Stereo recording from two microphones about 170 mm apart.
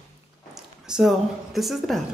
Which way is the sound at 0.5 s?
5° right (ahead or behind).